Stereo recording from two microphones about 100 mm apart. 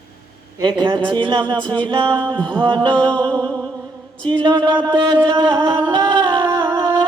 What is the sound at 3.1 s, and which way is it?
Music, 15° left (ahead or behind).